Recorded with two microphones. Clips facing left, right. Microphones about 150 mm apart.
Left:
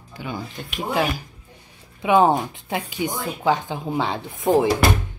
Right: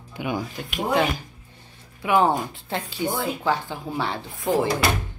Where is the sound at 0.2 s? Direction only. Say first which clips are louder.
Right 4 dB; 15° right (ahead or behind).